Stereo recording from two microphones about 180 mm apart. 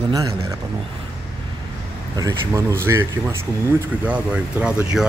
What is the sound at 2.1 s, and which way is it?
Speech, 20° right (ahead or behind).